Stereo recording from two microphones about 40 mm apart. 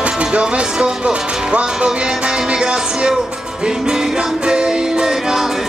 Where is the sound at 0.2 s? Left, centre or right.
Right.